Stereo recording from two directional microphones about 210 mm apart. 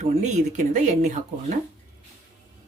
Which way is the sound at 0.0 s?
35° right (ahead or behind).